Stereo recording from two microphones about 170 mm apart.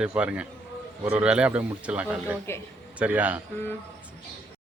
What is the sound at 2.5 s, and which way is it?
Speech, 15° left (ahead or behind).